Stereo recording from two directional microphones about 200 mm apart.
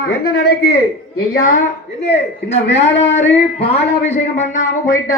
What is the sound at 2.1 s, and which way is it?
Speech, 60° left (ahead or behind).